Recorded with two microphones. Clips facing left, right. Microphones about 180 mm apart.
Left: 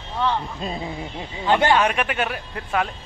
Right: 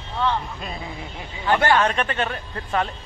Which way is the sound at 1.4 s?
15° left (ahead or behind).